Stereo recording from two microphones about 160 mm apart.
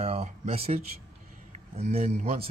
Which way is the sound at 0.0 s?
40° right (ahead or behind).